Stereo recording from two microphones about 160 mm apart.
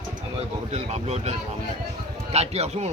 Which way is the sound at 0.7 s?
45° right (ahead or behind).